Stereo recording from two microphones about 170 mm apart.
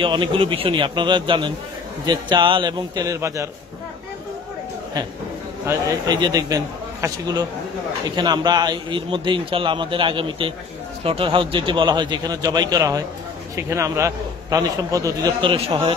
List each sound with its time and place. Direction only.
0.0 s a man's voice: 30° right (ahead or behind)
5.7 s a man's voice: 25° right (ahead or behind)
15.5 s a man's voice: 35° right (ahead or behind)